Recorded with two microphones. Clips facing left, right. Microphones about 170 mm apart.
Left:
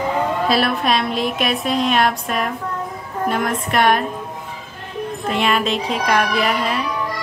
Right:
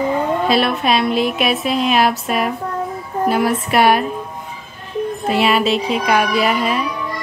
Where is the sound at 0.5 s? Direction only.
Centre (ahead or behind).